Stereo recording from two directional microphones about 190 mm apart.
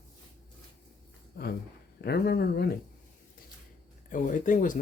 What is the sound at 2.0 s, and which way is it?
Speech, 55° left (ahead or behind).